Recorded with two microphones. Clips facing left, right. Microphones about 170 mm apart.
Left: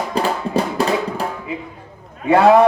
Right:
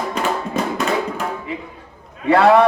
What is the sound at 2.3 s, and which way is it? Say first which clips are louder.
Speech: left 1 dB; 20° left (ahead or behind).